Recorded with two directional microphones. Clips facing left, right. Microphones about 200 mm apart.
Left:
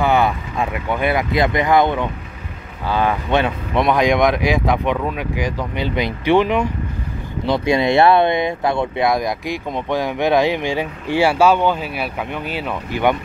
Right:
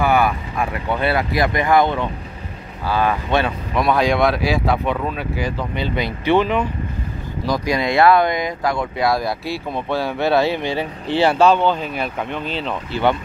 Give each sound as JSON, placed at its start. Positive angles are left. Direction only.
{"t": 0.0, "sound": "speech", "side_deg": 20}
{"t": 7.4, "sound": "speech", "side_deg": 25}